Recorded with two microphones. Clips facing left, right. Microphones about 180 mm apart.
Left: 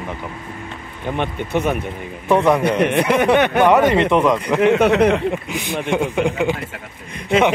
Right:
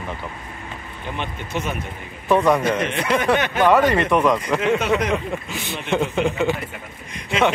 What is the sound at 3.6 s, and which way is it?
Speech, 20° left (ahead or behind).